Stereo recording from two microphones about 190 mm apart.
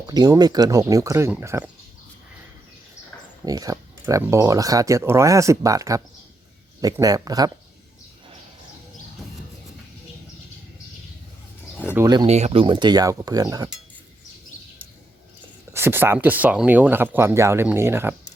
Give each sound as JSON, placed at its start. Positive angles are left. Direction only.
{"t": 0.0, "sound": "speech", "side_deg": -20}
{"t": 3.4, "sound": "speech", "side_deg": -20}
{"t": 11.9, "sound": "speech", "side_deg": -20}
{"t": 12.3, "sound": "speech", "side_deg": -35}
{"t": 15.7, "sound": "speech", "side_deg": -10}